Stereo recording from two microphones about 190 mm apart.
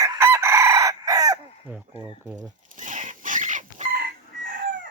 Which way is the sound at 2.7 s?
40° right (ahead or behind).